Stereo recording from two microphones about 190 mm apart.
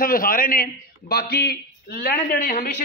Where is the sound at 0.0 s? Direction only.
50° left (ahead or behind).